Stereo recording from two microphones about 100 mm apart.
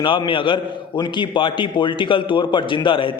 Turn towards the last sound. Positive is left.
turn(degrees=55)  # may be behind; listen again after turning